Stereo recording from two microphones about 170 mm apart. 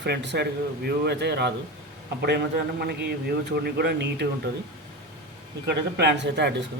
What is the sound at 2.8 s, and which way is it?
Speech, 70° right (ahead or behind).